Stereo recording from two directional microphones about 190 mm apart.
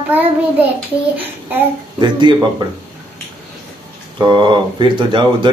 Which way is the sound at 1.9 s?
25° right (ahead or behind).